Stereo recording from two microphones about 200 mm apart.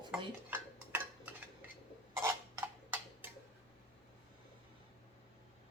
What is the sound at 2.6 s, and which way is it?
Tick-tock, 10° right (ahead or behind).